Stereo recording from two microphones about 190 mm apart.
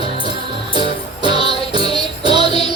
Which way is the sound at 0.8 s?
25° right (ahead or behind).